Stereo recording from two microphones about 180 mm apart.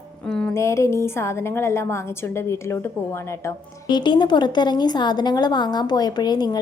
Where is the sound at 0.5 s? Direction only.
15° left (ahead or behind).